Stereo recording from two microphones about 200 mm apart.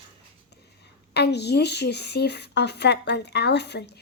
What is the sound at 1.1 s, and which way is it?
Speech, 55° left (ahead or behind).